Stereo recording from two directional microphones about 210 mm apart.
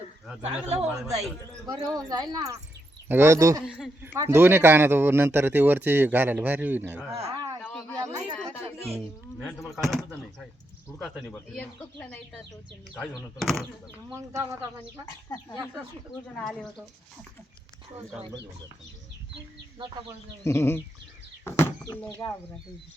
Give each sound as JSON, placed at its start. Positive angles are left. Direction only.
{"t": 0.7, "sound": "speech", "side_deg": -5}
{"t": 1.6, "sound": "speech", "side_deg": -20}
{"t": 3.6, "sound": "speech", "side_deg": 0}
{"t": 4.2, "sound": "speech", "side_deg": -10}
{"t": 7.2, "sound": "speech", "side_deg": -30}
{"t": 7.6, "sound": "a sound", "side_deg": 5}
{"t": 8.0, "sound": "chatter", "side_deg": -15}
{"t": 9.4, "sound": "speech", "side_deg": 0}
{"t": 14.1, "sound": "speech", "side_deg": -15}
{"t": 16.3, "sound": "speech", "side_deg": 5}
{"t": 20.4, "sound": "speech", "side_deg": 10}
{"t": 21.4, "sound": "a sound", "side_deg": 10}